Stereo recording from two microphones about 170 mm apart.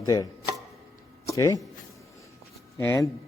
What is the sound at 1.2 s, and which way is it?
Speech, 20° left (ahead or behind).